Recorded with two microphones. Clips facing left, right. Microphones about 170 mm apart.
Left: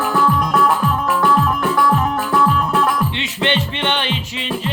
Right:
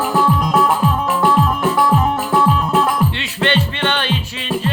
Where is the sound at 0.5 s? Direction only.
25° right (ahead or behind).